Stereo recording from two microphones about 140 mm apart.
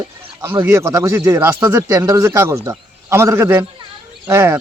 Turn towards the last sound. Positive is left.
turn(degrees=-20)  # may be behind; listen again after turning